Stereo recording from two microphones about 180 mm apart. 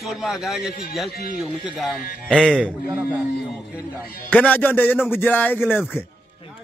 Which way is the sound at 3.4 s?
10° right (ahead or behind).